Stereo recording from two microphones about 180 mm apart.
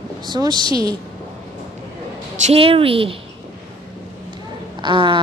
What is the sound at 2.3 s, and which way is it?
Speech, 40° right (ahead or behind).